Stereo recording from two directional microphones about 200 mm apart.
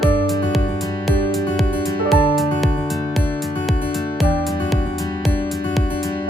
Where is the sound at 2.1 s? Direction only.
Centre (ahead or behind).